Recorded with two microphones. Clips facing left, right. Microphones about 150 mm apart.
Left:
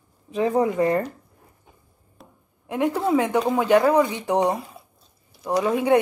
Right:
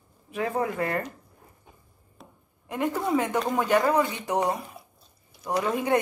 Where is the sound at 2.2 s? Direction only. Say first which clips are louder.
Left 1 dB; 10° left (ahead or behind).